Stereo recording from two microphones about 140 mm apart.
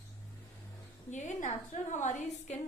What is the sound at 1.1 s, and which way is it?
A woman's voice, 60° left (ahead or behind).